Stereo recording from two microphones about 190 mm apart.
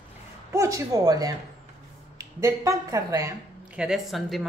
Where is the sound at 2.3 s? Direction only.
15° right (ahead or behind).